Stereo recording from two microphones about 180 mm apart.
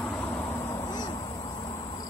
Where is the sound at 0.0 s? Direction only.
10° left (ahead or behind); by 2.0 s 25° left (ahead or behind).